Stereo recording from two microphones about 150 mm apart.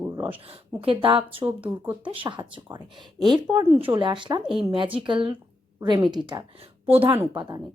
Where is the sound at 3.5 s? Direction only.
10° right (ahead or behind).